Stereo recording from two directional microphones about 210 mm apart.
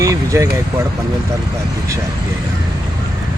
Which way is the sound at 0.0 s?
15° right (ahead or behind).